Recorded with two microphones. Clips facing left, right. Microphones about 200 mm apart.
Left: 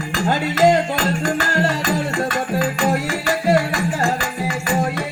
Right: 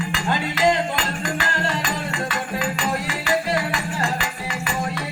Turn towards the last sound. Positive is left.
turn(degrees=45)  # may be behind; listen again after turning